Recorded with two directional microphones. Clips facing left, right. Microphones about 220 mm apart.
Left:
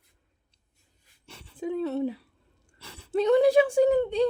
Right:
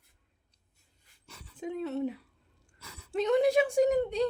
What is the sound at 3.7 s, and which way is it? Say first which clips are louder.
Speech: left 4 dB; 30° left (ahead or behind).